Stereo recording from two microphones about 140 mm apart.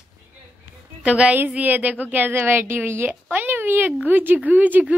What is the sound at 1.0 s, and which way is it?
A woman's voice, 10° right (ahead or behind).